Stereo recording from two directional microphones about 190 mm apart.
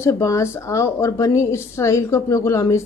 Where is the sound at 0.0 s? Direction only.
15° left (ahead or behind).